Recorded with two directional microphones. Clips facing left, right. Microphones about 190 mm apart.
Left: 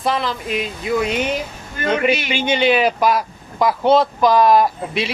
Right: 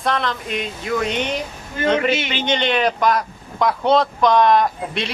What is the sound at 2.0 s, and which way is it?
Speech, 25° right (ahead or behind).